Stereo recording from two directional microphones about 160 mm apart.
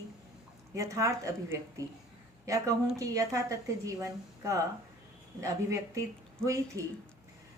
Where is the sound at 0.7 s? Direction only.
20° right (ahead or behind).